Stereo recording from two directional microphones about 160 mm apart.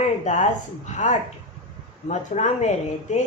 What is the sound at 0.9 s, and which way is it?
Speech, 50° left (ahead or behind).